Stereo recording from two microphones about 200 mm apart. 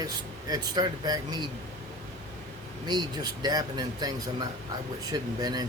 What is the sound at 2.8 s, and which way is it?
A man's voice, 20° right (ahead or behind).